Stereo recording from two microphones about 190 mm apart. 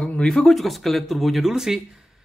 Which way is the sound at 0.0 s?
5° left (ahead or behind).